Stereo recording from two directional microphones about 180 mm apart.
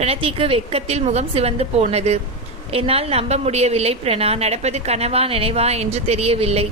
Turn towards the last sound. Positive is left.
turn(degrees=-35)  # may be behind; listen again after turning